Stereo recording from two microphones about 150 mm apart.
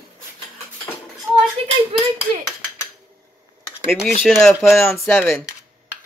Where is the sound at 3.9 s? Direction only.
Centre (ahead or behind).